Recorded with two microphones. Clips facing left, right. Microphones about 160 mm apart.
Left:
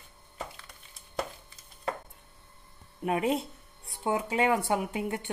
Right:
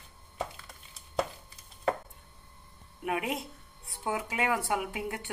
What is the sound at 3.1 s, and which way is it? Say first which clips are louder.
Speech: left 5 dB; 30° left (ahead or behind).